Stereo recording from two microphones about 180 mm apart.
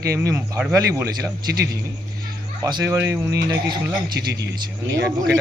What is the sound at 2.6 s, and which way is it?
Speech, 20° right (ahead or behind).